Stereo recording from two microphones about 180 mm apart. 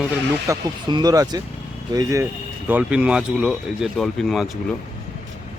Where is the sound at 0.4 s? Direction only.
20° right (ahead or behind); by 4.5 s centre (ahead or behind).